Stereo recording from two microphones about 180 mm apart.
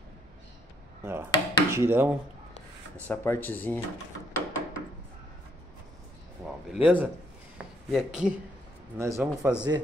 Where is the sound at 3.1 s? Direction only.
10° left (ahead or behind).